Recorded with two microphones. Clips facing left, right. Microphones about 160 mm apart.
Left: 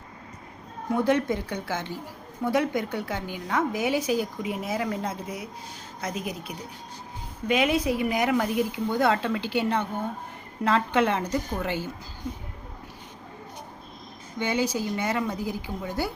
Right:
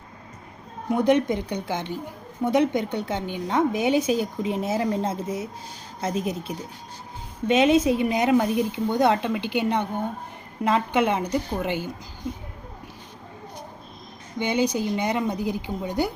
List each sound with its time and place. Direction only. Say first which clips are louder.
0.9 s a woman's voice: right 3 dB; 20° right (ahead or behind)
14.3 s a woman's voice: right 3 dB; 15° right (ahead or behind)